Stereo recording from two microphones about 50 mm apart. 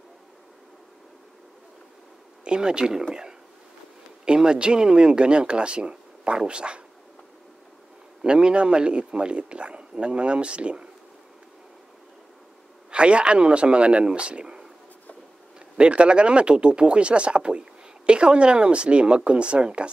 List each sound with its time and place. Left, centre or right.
2.4 s speech: centre
4.3 s speech: centre
8.2 s speech: centre
12.9 s speech: right
15.8 s speech: right